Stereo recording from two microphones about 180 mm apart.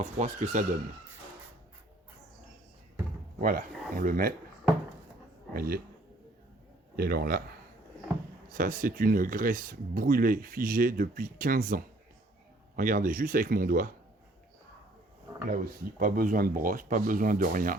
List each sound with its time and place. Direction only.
0.0 s speech: 40° right (ahead or behind)
3.4 s speech: 50° right (ahead or behind)
5.5 s speech: 55° right (ahead or behind)
6.9 s speech: 60° right (ahead or behind)
8.5 s speech: 50° right (ahead or behind)
15.4 s speech: 50° right (ahead or behind)